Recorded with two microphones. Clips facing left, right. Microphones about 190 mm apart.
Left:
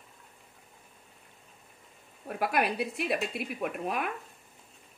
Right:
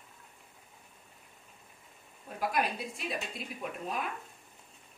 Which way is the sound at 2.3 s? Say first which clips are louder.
Left 3 dB; 65° left (ahead or behind).